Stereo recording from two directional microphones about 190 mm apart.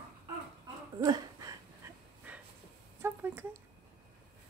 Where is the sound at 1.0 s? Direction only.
20° right (ahead or behind).